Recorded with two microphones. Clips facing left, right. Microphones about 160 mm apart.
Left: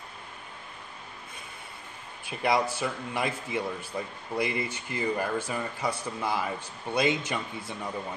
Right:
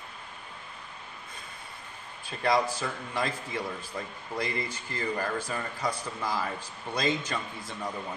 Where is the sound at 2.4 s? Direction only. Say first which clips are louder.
Even; 10° left (ahead or behind).